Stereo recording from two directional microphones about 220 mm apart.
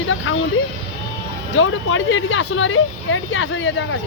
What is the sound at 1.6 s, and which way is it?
Speech, 60° left (ahead or behind).